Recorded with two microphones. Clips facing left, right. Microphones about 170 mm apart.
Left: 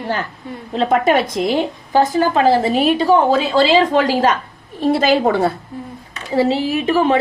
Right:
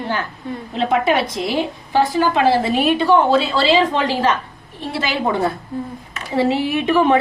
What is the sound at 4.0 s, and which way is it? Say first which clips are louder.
Speech: left 3 dB; 90° left.